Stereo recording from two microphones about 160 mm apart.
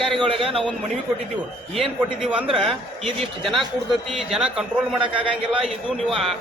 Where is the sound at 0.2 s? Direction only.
35° right (ahead or behind).